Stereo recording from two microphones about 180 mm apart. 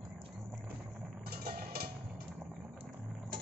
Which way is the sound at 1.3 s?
60° right (ahead or behind).